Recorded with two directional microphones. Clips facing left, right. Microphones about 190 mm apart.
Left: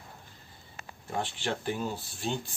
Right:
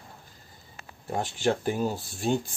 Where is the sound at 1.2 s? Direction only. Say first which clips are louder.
Right 7 dB; 45° right (ahead or behind).